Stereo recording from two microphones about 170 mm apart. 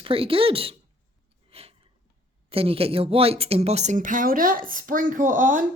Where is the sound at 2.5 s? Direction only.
35° right (ahead or behind).